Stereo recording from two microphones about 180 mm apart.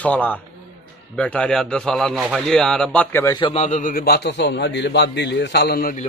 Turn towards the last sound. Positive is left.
turn(degrees=55)  # may be behind; listen again after turning